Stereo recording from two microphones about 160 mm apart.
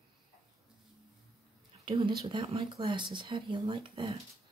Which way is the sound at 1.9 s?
30° right (ahead or behind).